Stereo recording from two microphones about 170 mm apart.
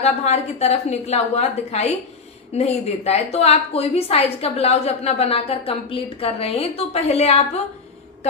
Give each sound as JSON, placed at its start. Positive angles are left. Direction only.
{"t": 0.0, "sound": "a woman's voice", "side_deg": 40}